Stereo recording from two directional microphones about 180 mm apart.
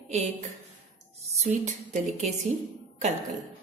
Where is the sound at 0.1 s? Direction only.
40° right (ahead or behind).